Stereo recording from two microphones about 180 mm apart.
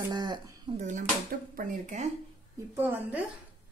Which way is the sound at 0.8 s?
45° right (ahead or behind).